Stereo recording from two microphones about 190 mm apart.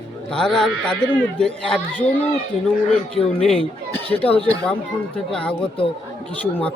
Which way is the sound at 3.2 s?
30° left (ahead or behind).